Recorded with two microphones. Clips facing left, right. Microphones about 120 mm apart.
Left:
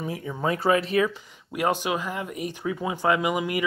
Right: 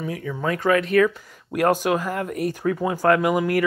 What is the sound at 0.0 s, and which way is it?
Speech, 25° left (ahead or behind).